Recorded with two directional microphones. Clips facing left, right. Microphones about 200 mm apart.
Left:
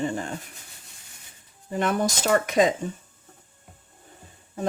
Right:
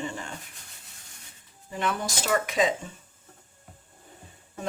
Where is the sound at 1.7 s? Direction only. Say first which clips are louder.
Left 6 dB; 45° left (ahead or behind).